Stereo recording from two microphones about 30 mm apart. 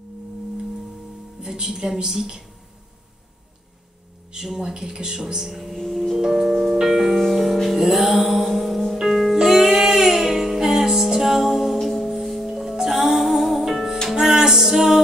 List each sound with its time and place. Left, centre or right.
1.4 s a woman's voice: right
4.4 s a woman's voice: centre
6.1 s music: centre
9.4 s music: centre
14.2 s music: centre